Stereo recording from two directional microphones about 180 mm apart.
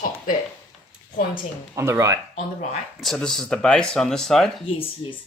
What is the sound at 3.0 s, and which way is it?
Speech, centre (ahead or behind).